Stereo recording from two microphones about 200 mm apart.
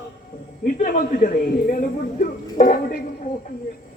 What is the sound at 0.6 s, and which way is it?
Speech, 45° left (ahead or behind).